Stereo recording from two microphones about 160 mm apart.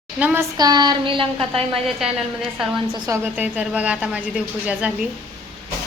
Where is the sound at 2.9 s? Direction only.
25° right (ahead or behind).